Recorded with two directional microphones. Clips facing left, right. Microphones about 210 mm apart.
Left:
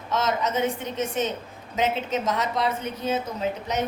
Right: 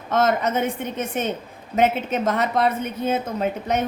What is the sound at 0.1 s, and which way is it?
A woman's voice, 55° right (ahead or behind).